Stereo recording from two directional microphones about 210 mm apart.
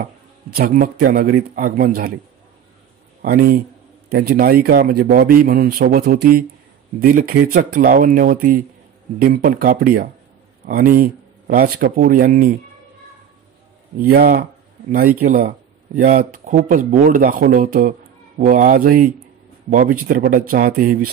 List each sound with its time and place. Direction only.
0.6 s speech: 45° right (ahead or behind)
3.2 s speech: 45° right (ahead or behind)
14.1 s speech: 45° right (ahead or behind)